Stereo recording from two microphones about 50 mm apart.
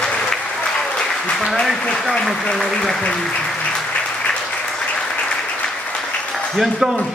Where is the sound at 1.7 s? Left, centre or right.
Centre.